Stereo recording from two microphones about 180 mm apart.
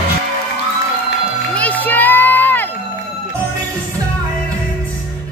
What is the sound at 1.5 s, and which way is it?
Crowd, 10° left (ahead or behind).